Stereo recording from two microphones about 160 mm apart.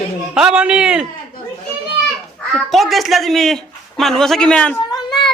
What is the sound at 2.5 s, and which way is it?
Speech, centre (ahead or behind).